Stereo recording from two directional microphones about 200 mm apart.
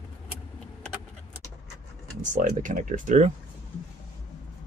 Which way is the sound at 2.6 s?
40° right (ahead or behind).